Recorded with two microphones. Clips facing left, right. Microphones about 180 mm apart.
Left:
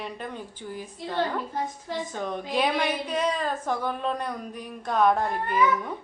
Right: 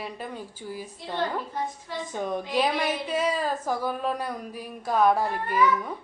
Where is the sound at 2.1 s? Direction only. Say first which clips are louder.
Right 6 dB; 10° right (ahead or behind).